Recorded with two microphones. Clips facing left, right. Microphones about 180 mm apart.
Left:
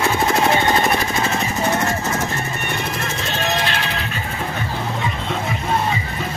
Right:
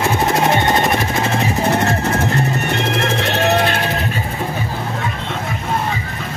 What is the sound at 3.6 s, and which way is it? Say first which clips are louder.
Music: right 5 dB; 50° right (ahead or behind).